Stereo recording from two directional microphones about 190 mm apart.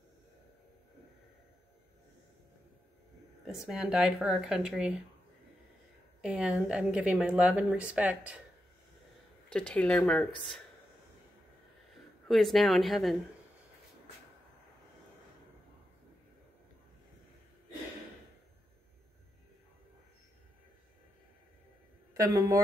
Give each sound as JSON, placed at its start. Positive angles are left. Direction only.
{"t": 3.6, "sound": "speech", "side_deg": -5}
{"t": 6.2, "sound": "speech", "side_deg": -5}
{"t": 9.5, "sound": "speech", "side_deg": 5}
{"t": 12.3, "sound": "speech", "side_deg": 0}
{"t": 22.1, "sound": "speech", "side_deg": -15}